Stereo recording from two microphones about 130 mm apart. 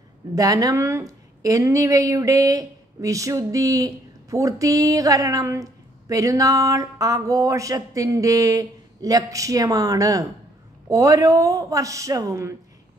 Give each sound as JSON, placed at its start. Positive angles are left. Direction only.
{"t": 0.3, "sound": "a woman's voice", "side_deg": -25}